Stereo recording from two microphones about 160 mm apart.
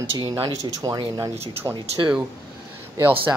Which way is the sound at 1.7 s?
35° right (ahead or behind).